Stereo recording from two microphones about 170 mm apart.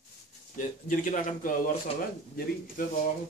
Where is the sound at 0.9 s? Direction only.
50° left (ahead or behind).